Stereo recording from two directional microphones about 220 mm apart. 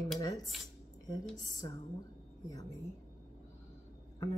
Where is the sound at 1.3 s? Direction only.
15° left (ahead or behind).